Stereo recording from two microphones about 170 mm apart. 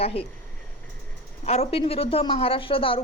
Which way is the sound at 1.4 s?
35° left (ahead or behind).